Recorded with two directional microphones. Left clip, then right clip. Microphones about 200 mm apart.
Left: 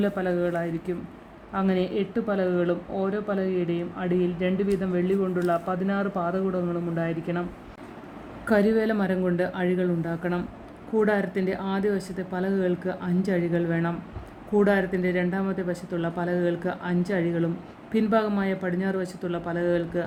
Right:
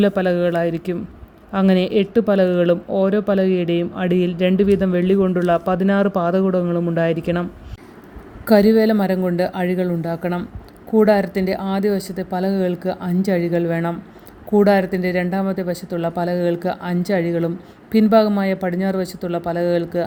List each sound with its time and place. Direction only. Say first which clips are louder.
0.0 s speech: right 8 dB; 50° right (ahead or behind)
8.4 s speech: right 8 dB; 35° right (ahead or behind)